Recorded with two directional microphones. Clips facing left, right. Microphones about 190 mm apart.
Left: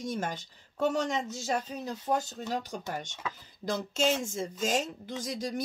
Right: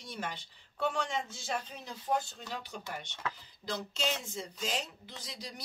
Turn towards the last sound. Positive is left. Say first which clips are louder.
# left 12 dB
turn(degrees=45)  # may be behind; listen again after turning